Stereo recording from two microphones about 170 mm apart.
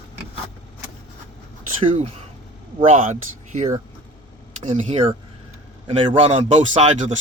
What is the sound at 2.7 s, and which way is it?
Speech, 40° right (ahead or behind).